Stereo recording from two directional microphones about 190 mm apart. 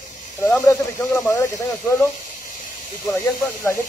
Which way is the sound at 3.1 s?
15° left (ahead or behind).